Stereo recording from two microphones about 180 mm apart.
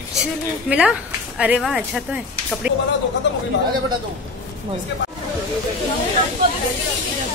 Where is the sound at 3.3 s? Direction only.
80° left.